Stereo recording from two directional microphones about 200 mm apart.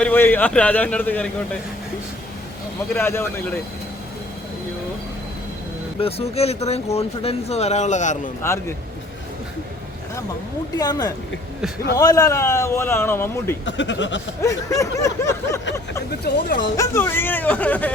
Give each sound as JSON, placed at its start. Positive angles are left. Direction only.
{"t": 0.0, "sound": "a man's voice", "side_deg": 10}
{"t": 2.9, "sound": "a man's voice", "side_deg": 10}
{"t": 6.0, "sound": "speech", "side_deg": 30}
{"t": 8.4, "sound": "a man's voice", "side_deg": 15}
{"t": 10.8, "sound": "a man's voice", "side_deg": 20}
{"t": 13.7, "sound": "speech", "side_deg": 65}
{"t": 14.4, "sound": "a man's voice", "side_deg": 15}